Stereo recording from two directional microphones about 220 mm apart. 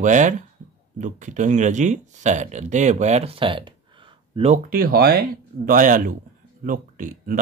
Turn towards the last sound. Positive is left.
turn(degrees=-35)  # may be behind; listen again after turning